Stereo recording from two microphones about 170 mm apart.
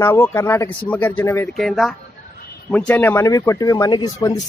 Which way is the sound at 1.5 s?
Centre (ahead or behind).